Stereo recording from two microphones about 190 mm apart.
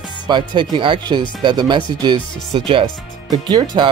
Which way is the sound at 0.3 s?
25° right (ahead or behind).